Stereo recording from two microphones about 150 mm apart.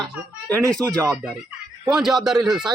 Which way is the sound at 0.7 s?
5° left (ahead or behind).